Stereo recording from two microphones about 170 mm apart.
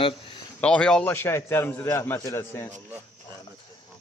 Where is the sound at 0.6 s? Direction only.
5° left (ahead or behind).